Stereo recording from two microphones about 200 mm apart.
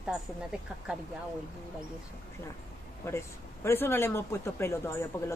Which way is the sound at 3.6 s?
10° left (ahead or behind).